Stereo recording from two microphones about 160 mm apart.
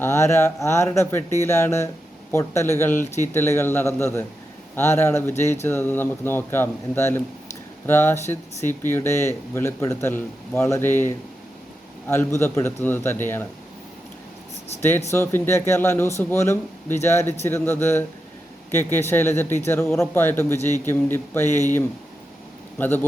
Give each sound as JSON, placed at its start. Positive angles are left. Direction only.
{"t": 0.0, "sound": "speech", "side_deg": 15}
{"t": 14.8, "sound": "speech", "side_deg": 15}